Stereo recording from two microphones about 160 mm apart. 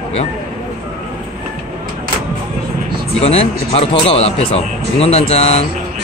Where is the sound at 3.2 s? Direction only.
40° left (ahead or behind).